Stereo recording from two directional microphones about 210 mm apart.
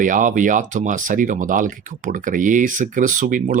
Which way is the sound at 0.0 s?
40° right (ahead or behind).